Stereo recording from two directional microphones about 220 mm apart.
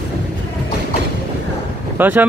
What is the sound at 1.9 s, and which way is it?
Speech, 10° right (ahead or behind).